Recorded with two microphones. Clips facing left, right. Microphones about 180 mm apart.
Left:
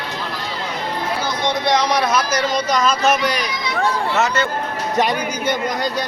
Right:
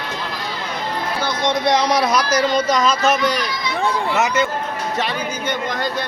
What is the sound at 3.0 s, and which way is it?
Speech, 15° left (ahead or behind).